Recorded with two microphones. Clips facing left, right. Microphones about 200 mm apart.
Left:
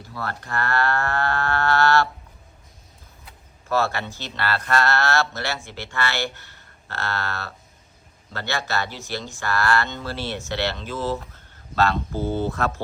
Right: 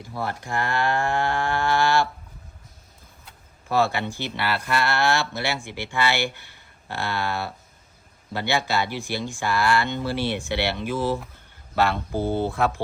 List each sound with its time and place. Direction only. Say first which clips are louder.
0.0 s speech: right 2 dB; 15° right (ahead or behind)
3.7 s speech: right 1 dB; 15° right (ahead or behind)